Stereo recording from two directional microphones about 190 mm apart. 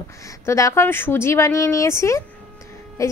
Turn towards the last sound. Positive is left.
turn(degrees=15)  # may be behind; listen again after turning